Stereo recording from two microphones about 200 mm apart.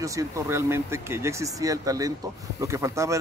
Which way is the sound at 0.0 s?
15° right (ahead or behind).